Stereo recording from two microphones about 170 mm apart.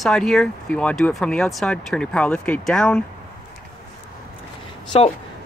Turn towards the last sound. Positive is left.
turn(degrees=35)  # may be behind; listen again after turning